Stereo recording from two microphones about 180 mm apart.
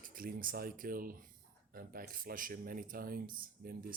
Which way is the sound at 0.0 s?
50° right (ahead or behind).